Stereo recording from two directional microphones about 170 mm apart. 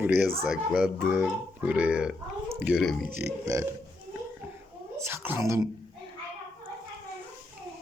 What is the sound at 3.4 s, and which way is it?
Speech, 15° right (ahead or behind).